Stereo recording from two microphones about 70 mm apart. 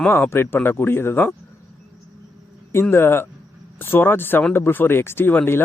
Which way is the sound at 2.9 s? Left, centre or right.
Left.